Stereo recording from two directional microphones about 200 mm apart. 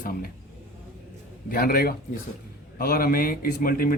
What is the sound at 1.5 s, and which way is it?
A man's voice, 50° left (ahead or behind).